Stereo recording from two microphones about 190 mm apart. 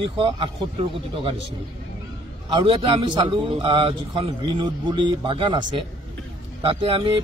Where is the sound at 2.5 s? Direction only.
25° right (ahead or behind).